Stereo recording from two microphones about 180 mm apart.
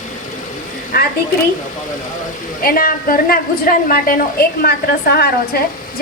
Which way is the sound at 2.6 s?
50° left (ahead or behind).